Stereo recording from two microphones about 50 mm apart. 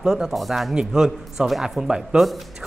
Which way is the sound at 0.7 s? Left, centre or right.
Centre.